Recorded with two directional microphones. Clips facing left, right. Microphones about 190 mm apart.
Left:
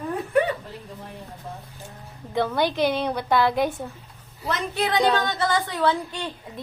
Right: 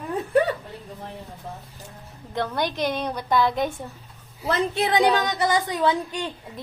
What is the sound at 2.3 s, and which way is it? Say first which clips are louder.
A woman's voice: left 3 dB; 5° left (ahead or behind).